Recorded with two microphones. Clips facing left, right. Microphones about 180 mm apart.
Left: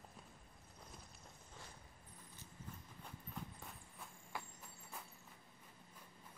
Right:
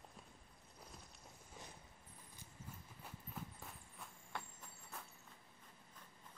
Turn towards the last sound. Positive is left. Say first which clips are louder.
# even
turn(degrees=5)  # may be behind; listen again after turning